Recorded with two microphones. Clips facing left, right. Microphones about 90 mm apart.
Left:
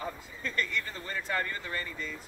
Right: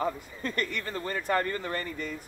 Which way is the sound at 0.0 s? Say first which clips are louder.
Right 6 dB; 50° right (ahead or behind).